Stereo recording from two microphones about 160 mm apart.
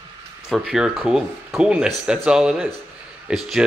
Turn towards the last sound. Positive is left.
turn(degrees=0)  # may be behind; listen again after turning